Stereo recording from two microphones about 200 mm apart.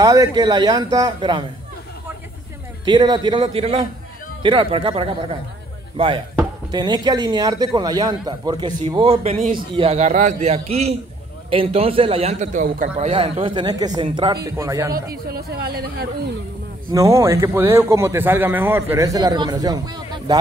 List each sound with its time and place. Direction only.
0.0 s speech: 20° right (ahead or behind)
2.8 s a man's voice: 20° right (ahead or behind); by 12.9 s 40° right (ahead or behind)
12.9 s speech: 30° right (ahead or behind)
15.0 s speech: 50° right (ahead or behind)
16.9 s a man's voice: 15° right (ahead or behind)